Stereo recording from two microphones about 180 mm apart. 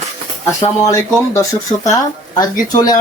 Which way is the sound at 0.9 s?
15° left (ahead or behind).